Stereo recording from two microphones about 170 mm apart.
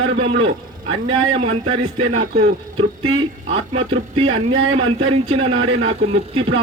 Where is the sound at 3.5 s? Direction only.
35° right (ahead or behind).